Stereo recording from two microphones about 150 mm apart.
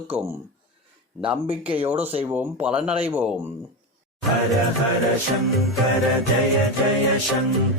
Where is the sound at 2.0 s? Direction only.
40° right (ahead or behind).